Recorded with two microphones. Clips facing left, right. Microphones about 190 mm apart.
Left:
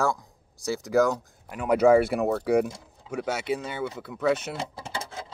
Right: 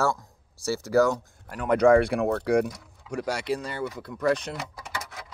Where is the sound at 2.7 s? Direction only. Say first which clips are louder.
Left 2 dB; 25° left (ahead or behind).